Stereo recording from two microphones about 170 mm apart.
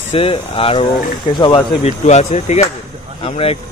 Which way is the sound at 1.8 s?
40° left (ahead or behind).